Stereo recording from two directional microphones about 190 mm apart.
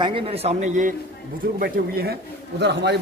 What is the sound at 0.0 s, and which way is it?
Speech, 30° right (ahead or behind).